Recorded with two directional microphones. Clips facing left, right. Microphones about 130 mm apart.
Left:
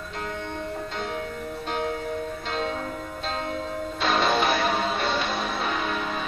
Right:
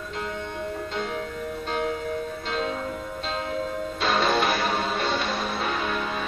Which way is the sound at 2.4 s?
Centre (ahead or behind).